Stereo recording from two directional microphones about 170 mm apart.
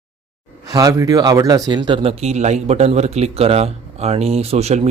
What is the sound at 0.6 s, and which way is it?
Speech, 20° right (ahead or behind).